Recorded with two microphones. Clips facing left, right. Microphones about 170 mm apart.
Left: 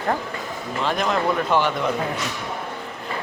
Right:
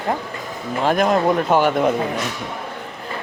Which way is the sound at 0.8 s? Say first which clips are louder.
Right 6 dB; 50° right (ahead or behind).